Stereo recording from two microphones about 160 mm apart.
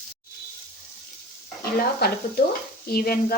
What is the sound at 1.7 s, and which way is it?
Speech, 75° left (ahead or behind).